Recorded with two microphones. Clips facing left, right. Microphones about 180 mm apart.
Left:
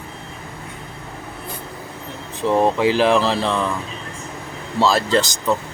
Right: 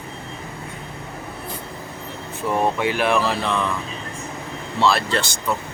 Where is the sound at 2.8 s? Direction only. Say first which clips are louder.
Left 5 dB; 90° left.